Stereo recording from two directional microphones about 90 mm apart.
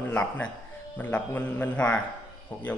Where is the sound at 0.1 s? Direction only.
10° left (ahead or behind).